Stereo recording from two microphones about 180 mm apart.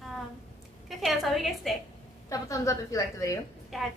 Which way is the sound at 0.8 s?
Centre (ahead or behind).